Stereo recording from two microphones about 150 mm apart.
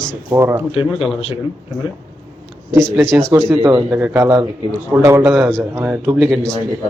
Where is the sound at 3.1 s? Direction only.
5° left (ahead or behind).